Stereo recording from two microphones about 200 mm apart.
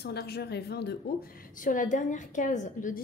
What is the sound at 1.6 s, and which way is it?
A woman's voice, 40° left (ahead or behind).